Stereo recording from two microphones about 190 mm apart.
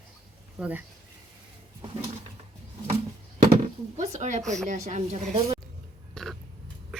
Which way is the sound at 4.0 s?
40° right (ahead or behind).